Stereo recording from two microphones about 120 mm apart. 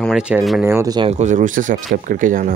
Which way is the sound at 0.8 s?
35° right (ahead or behind).